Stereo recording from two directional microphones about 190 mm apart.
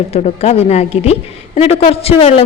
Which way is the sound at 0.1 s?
35° left (ahead or behind).